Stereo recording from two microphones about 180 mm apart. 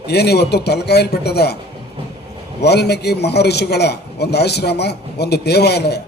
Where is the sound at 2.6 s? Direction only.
65° left (ahead or behind).